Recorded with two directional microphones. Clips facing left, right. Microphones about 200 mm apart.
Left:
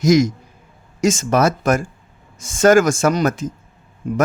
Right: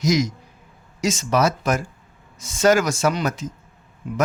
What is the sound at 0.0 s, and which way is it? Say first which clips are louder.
Speech: left 6 dB; 50° left (ahead or behind).